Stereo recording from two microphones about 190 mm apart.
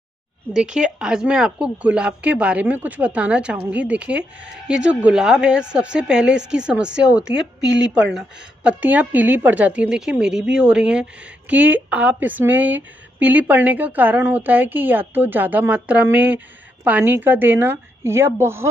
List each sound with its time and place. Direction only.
0.5 s speech: 5° right (ahead or behind)
7.3 s speech: 70° right (ahead or behind)
7.9 s a woman's voice: centre (ahead or behind)